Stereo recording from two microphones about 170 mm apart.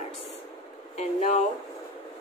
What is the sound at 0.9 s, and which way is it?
Speech, 40° left (ahead or behind).